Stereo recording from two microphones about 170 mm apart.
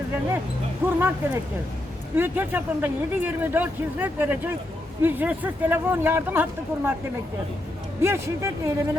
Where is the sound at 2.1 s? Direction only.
10° right (ahead or behind).